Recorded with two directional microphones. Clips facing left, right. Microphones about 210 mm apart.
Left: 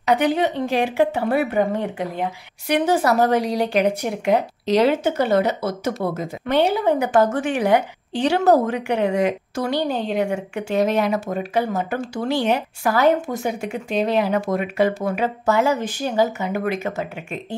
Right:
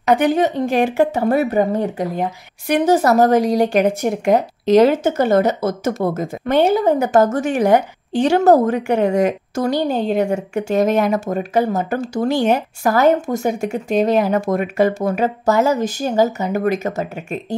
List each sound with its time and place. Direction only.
0.0 s speech: 50° right (ahead or behind)